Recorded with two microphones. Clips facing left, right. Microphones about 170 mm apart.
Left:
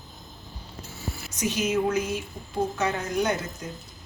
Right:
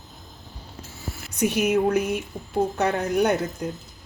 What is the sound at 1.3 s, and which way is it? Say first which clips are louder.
Speech: right 5 dB; 60° right (ahead or behind).